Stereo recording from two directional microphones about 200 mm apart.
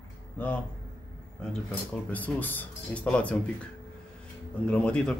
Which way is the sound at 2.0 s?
10° left (ahead or behind).